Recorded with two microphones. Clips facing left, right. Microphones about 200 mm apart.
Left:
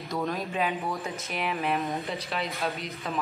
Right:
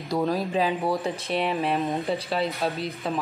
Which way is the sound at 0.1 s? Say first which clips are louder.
Right 6 dB; 35° right (ahead or behind).